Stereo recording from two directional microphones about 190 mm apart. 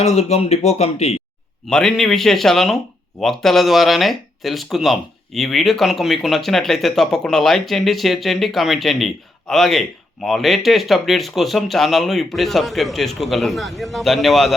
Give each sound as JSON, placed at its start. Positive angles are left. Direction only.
{"t": 0.0, "sound": "speech", "side_deg": 35}
{"t": 1.6, "sound": "speech", "side_deg": 0}